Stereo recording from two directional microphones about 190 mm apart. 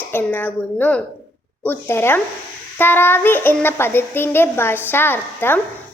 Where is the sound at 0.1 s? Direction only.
10° left (ahead or behind).